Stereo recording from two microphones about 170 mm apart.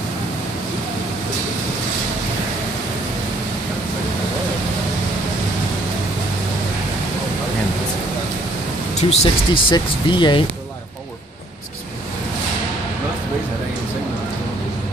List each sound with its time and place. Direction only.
8.9 s speech: 35° left (ahead or behind)